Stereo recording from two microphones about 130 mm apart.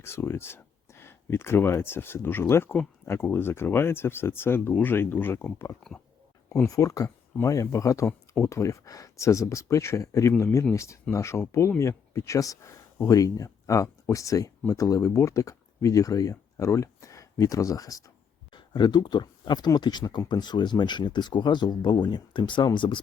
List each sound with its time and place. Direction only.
0.0 s speech: 20° left (ahead or behind); by 23.0 s 35° left (ahead or behind)